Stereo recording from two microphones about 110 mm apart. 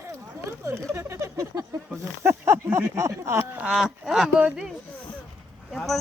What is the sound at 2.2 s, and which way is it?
Speech, 25° right (ahead or behind).